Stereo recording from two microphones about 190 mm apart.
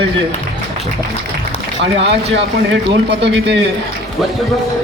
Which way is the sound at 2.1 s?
60° right (ahead or behind).